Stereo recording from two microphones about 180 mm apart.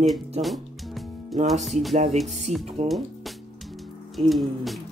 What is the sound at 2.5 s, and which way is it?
Speech, 40° right (ahead or behind).